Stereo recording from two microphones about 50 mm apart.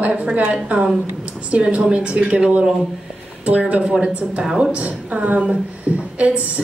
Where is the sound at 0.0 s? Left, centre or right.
Right.